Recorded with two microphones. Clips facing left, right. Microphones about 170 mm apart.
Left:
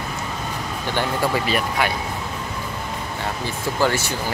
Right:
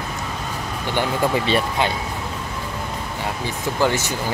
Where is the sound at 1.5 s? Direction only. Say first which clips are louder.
Right 2 dB; 25° right (ahead or behind).